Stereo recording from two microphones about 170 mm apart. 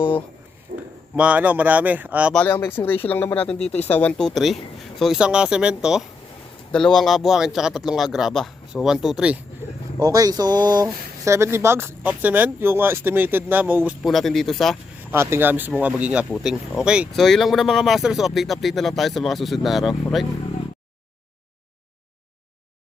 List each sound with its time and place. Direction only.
0.7 s a sound: 50° right (ahead or behind)
1.1 s speech: 10° right (ahead or behind)
2.3 s speech: 10° left (ahead or behind)
10.0 s speech: 20° right (ahead or behind)
14.0 s speech: centre (ahead or behind)
15.1 s speech: 15° right (ahead or behind)